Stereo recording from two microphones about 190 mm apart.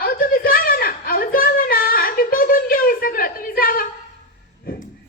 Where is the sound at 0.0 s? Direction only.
50° left (ahead or behind).